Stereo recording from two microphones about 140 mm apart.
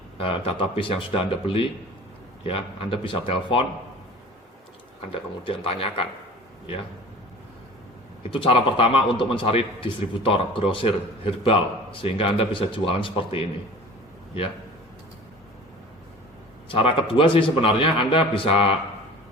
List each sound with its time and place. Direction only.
0.2 s a man's voice: 40° left (ahead or behind)
5.5 s a man's voice: 40° left (ahead or behind)
8.3 s a man's voice: 40° left (ahead or behind)
16.6 s a man's voice: 40° left (ahead or behind)